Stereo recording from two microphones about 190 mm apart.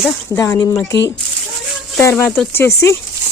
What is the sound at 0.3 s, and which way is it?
Speech, 20° left (ahead or behind).